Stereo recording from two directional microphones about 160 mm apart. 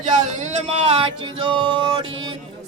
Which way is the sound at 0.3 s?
45° right (ahead or behind).